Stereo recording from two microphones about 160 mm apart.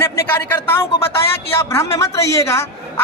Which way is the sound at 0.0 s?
15° left (ahead or behind).